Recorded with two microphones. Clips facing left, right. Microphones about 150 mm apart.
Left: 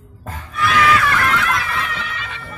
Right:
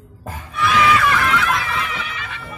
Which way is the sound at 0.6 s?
Centre (ahead or behind).